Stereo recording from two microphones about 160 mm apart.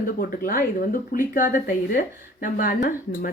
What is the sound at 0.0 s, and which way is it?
Speech, 60° left (ahead or behind).